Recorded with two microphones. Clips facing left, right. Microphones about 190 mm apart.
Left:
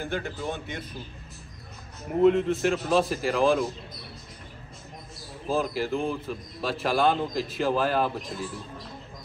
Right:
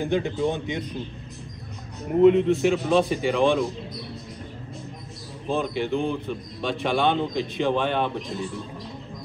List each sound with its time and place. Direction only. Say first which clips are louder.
0.0 s a man's voice: right 8 dB; 15° right (ahead or behind)
2.2 s speech: right 4 dB; centre (ahead or behind)
5.5 s speech: right 2 dB; centre (ahead or behind)